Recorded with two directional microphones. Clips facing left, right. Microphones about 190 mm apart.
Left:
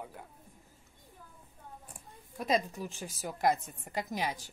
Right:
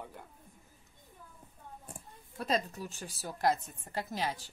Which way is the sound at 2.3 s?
10° left (ahead or behind).